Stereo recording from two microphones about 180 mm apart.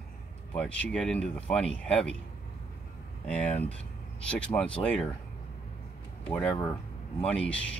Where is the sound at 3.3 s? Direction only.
5° left (ahead or behind).